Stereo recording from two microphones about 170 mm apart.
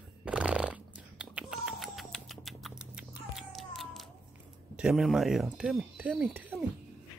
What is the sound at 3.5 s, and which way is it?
Cat, centre (ahead or behind).